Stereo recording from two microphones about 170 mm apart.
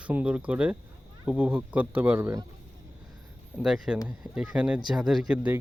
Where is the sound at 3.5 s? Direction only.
5° right (ahead or behind).